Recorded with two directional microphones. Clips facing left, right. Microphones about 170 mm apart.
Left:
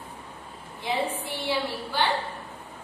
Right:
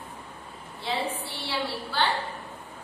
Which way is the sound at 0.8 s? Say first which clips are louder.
Left 2 dB; 15° left (ahead or behind).